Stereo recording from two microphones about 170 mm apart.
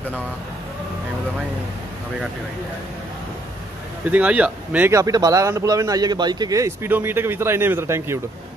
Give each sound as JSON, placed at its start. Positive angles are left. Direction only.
{"t": 4.1, "sound": "a man's voice", "side_deg": -10}